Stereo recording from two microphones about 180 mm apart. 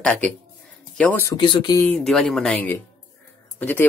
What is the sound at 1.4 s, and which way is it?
Speech, 25° left (ahead or behind).